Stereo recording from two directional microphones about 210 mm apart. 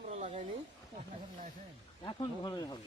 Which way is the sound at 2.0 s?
20° left (ahead or behind).